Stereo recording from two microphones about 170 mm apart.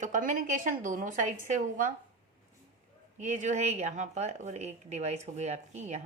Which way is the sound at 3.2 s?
45° right (ahead or behind).